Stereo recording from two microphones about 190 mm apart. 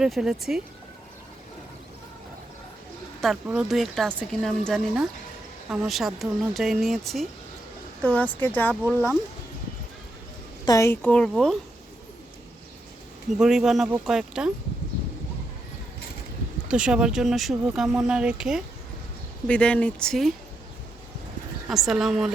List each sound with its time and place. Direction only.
0.0 s speech: centre (ahead or behind)
3.2 s speech: 5° right (ahead or behind)
8.7 s speech: centre (ahead or behind)
10.7 s speech: 15° left (ahead or behind)
13.4 s speech: 5° right (ahead or behind)
16.6 s speech: 5° right (ahead or behind)
21.7 s speech: centre (ahead or behind)